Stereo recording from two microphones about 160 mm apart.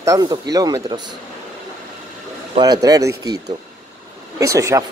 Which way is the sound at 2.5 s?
25° right (ahead or behind).